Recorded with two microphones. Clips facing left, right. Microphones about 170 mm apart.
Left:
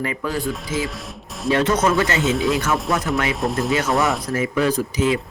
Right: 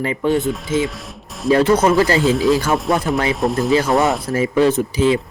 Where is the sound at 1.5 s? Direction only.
35° right (ahead or behind).